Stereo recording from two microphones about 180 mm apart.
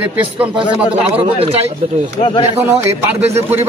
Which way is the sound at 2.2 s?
30° left (ahead or behind).